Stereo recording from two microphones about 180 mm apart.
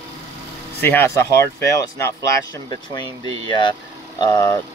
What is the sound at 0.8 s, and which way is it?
Speech, 15° left (ahead or behind).